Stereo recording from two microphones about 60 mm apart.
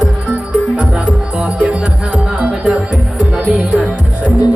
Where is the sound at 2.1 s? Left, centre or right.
Centre.